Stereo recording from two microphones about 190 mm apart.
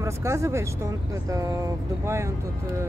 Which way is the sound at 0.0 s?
15° right (ahead or behind).